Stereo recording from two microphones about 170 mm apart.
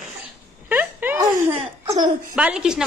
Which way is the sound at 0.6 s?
10° right (ahead or behind).